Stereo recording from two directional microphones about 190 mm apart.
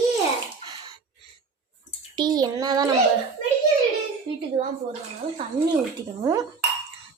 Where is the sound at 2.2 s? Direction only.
20° right (ahead or behind).